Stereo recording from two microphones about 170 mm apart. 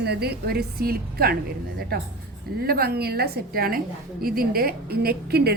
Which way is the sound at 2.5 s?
60° right (ahead or behind).